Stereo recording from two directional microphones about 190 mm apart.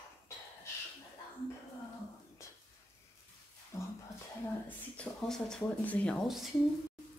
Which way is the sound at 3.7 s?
15° left (ahead or behind).